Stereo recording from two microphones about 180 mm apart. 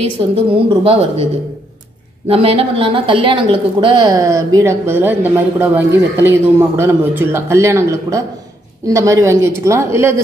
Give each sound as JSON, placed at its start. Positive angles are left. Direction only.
{"t": 0.5, "sound": "a woman's voice", "side_deg": -30}
{"t": 2.2, "sound": "a man's voice", "side_deg": -30}